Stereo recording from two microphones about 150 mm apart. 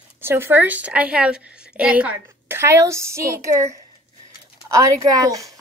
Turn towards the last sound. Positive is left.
turn(degrees=-25)  # may be behind; listen again after turning